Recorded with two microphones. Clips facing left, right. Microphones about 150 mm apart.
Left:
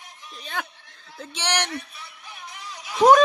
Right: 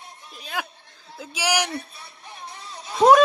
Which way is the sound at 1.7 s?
25° right (ahead or behind).